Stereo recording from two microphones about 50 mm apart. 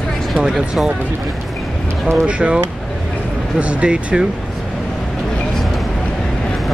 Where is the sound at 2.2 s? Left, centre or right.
Right.